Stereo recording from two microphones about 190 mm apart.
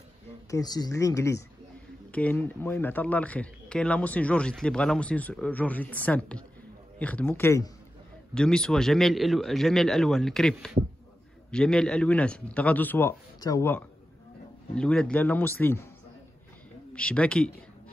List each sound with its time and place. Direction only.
0.5 s a man's voice: 20° left (ahead or behind)
16.9 s speech: 5° left (ahead or behind)